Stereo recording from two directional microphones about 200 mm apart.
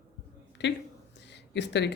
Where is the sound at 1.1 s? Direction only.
60° left (ahead or behind).